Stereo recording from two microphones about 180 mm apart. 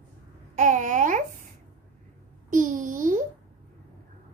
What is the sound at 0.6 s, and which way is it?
Babbling, 45° right (ahead or behind).